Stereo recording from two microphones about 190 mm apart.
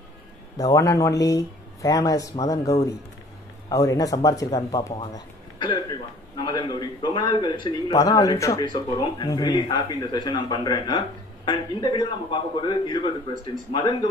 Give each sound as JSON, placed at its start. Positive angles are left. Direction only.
{"t": 0.6, "sound": "a man's voice", "side_deg": 15}